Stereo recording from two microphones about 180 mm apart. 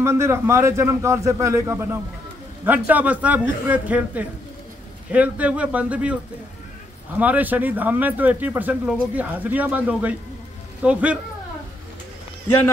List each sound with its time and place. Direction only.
0.0 s speech: 15° right (ahead or behind)
7.2 s speech: 10° right (ahead or behind)